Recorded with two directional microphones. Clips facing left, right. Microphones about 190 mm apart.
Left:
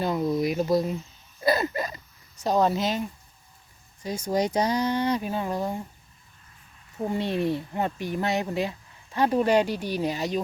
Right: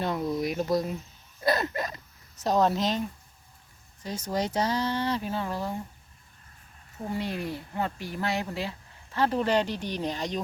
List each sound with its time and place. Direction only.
0.0 s speech: centre (ahead or behind)
1.4 s a sound: 5° left (ahead or behind)
2.4 s speech: centre (ahead or behind)
4.0 s speech: 10° left (ahead or behind)
7.1 s speech: 25° left (ahead or behind); by 10.4 s 5° left (ahead or behind)